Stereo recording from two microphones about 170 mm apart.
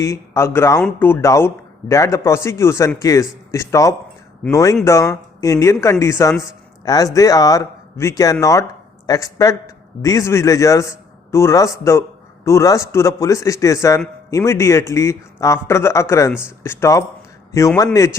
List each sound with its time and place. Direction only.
0.0 s a man's voice: 15° left (ahead or behind)